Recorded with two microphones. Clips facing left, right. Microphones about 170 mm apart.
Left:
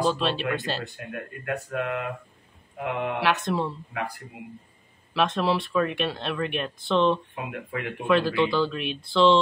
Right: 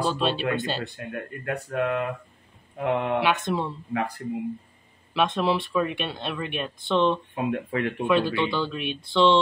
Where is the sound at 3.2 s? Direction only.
Centre (ahead or behind).